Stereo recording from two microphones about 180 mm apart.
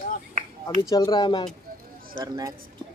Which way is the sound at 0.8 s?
20° left (ahead or behind).